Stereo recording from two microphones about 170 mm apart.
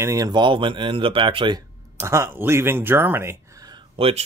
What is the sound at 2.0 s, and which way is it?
Speech, 15° right (ahead or behind).